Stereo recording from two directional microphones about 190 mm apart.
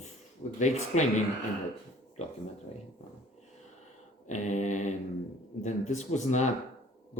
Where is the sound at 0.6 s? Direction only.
40° left (ahead or behind).